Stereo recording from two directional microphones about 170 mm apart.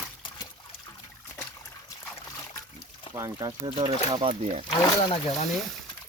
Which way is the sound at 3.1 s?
20° right (ahead or behind).